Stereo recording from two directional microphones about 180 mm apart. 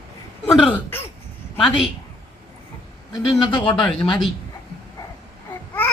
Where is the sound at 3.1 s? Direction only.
25° left (ahead or behind).